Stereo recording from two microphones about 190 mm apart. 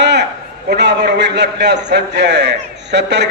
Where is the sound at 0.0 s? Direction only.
65° right (ahead or behind).